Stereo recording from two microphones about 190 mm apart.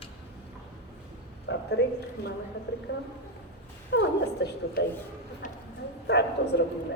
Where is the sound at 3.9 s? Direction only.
65° left (ahead or behind).